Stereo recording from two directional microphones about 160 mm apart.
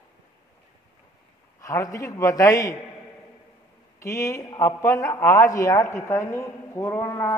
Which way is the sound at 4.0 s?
20° left (ahead or behind).